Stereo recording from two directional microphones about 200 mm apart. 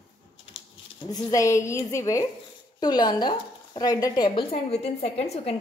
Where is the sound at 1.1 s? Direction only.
15° left (ahead or behind); by 5.5 s 30° left (ahead or behind).